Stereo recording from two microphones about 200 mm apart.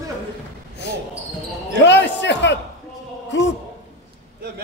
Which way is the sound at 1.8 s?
60° left (ahead or behind).